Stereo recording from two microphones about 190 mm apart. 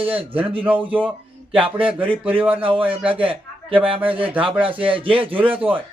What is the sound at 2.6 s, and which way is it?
A man's voice, 30° right (ahead or behind).